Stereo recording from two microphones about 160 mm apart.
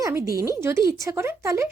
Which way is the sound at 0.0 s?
20° right (ahead or behind).